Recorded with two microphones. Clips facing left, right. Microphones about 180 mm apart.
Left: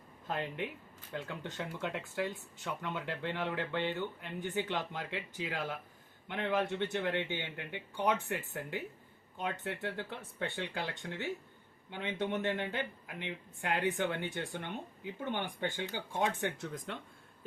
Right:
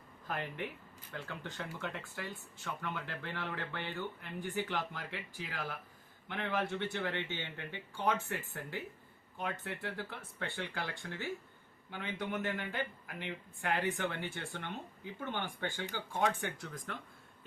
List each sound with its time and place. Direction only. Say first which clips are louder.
0.3 s speech: left 2 dB; 20° left (ahead or behind)